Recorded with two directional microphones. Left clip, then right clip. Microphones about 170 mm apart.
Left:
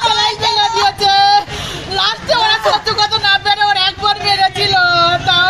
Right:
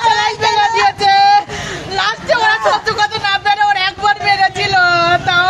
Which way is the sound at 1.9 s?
Centre (ahead or behind).